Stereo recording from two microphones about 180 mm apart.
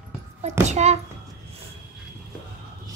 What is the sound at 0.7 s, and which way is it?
Speech, 40° right (ahead or behind).